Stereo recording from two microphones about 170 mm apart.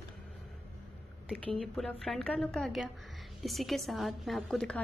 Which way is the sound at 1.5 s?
Centre (ahead or behind).